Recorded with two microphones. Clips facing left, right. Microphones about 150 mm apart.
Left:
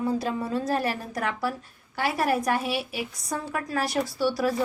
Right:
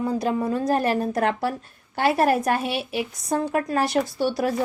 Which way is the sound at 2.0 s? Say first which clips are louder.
Right 5 dB; 60° right (ahead or behind).